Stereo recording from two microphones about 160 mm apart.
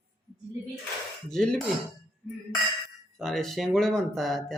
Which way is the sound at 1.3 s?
5° left (ahead or behind).